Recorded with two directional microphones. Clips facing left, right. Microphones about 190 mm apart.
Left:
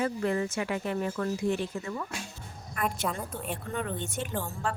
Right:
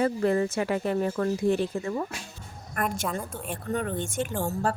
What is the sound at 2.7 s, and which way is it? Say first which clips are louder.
Speech: right 3 dB; 50° right (ahead or behind).